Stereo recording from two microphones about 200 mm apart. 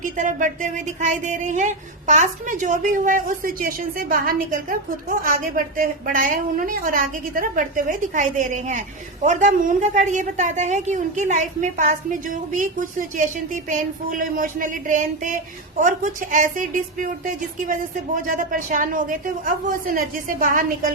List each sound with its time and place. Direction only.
0.0 s a woman's voice: 40° right (ahead or behind)